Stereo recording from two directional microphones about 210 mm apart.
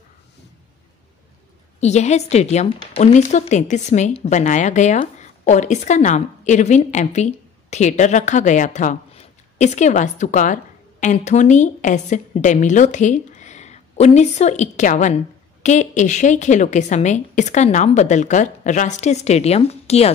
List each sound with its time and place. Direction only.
1.8 s a woman's voice: 30° left (ahead or behind)